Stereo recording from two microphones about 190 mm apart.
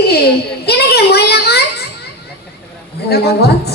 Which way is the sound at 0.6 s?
60° left (ahead or behind).